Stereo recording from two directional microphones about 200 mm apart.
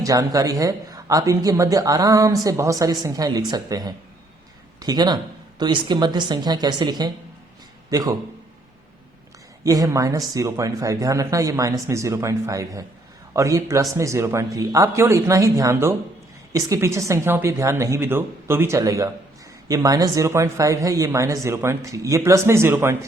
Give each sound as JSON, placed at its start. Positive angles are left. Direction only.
{"t": 0.0, "sound": "a man's voice", "side_deg": -15}
{"t": 9.6, "sound": "speech", "side_deg": -15}